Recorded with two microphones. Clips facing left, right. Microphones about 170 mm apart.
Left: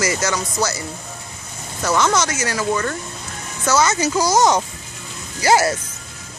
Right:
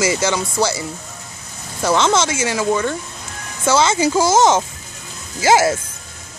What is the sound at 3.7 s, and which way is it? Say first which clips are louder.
Speech: right 2 dB; 25° right (ahead or behind).